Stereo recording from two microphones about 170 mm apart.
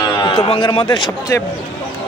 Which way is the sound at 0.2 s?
25° left (ahead or behind).